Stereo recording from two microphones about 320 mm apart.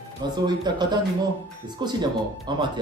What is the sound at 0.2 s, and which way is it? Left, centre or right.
Speech, centre.